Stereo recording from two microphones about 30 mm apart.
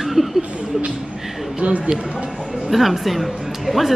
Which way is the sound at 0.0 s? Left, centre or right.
Centre.